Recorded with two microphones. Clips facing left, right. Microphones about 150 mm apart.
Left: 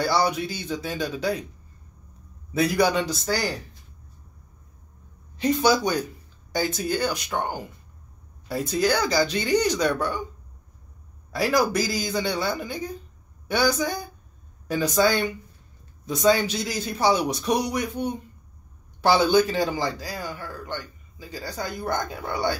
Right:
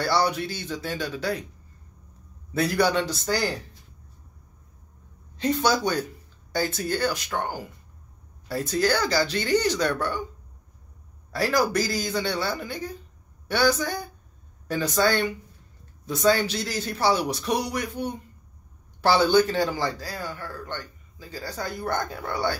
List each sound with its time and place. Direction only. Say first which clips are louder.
0.0 s a man's voice: left 1 dB; 15° left (ahead or behind)
2.5 s a man's voice: left 1 dB; 15° left (ahead or behind)
5.4 s a man's voice: left 2 dB; 10° left (ahead or behind)
11.3 s a man's voice: left 1 dB; 15° left (ahead or behind)